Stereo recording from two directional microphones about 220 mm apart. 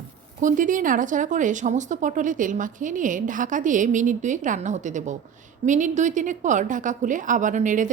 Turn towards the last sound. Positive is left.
turn(degrees=-35)  # may be behind; listen again after turning